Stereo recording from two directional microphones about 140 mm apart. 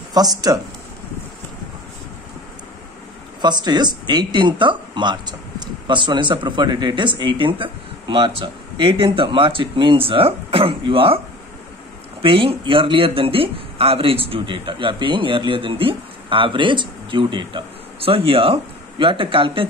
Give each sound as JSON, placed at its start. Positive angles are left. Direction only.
{"t": 0.1, "sound": "speech", "side_deg": -25}
{"t": 3.3, "sound": "speech", "side_deg": -30}
{"t": 12.2, "sound": "speech", "side_deg": -40}